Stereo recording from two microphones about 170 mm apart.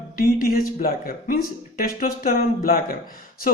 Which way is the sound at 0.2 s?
55° left (ahead or behind).